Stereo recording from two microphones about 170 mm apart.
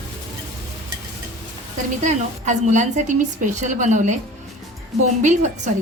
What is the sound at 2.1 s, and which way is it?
A woman's voice, 45° right (ahead or behind).